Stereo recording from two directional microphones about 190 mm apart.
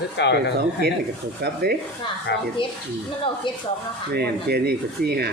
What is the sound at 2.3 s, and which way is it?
Speech, 65° left (ahead or behind).